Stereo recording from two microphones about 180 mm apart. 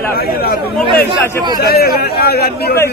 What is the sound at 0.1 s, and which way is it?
Speech, 60° left (ahead or behind).